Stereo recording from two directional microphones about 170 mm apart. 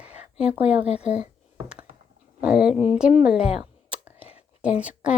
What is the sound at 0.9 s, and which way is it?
Speech, 40° left (ahead or behind).